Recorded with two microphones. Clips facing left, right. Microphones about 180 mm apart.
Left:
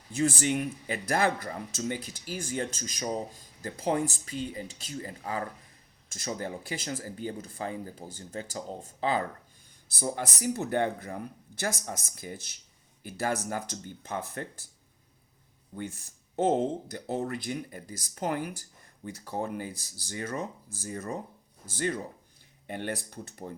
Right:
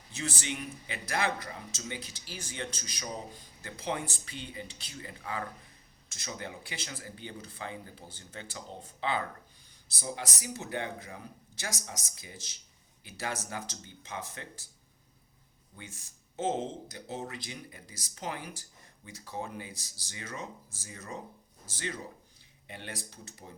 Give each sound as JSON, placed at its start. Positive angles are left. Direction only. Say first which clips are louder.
{"t": 0.1, "sound": "speech", "louder": "left 10 dB", "side_deg": 50}
{"t": 15.7, "sound": "speech", "louder": "left 11 dB", "side_deg": 55}